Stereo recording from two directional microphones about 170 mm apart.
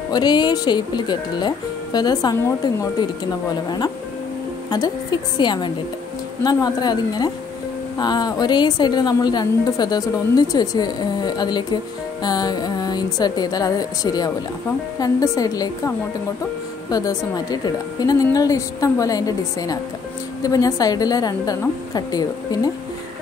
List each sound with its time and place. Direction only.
0.1 s a woman's voice: 25° left (ahead or behind)
16.9 s a woman's voice: 20° left (ahead or behind)